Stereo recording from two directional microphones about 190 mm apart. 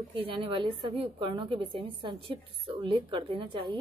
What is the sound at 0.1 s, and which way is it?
A woman's voice, 30° right (ahead or behind).